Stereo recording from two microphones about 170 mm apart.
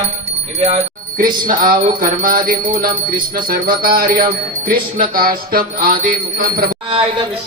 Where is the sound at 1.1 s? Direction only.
55° right (ahead or behind).